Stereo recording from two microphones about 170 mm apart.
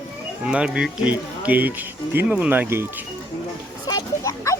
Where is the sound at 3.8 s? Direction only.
20° left (ahead or behind).